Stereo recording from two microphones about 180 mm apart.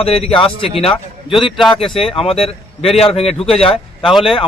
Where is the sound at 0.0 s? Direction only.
35° left (ahead or behind).